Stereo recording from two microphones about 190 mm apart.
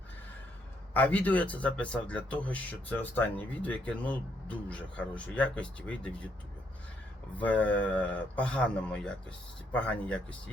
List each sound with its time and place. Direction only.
0.9 s speech: 10° left (ahead or behind)
7.3 s speech: 10° left (ahead or behind)